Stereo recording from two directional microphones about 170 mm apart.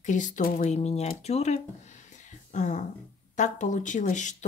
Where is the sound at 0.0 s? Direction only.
45° left (ahead or behind).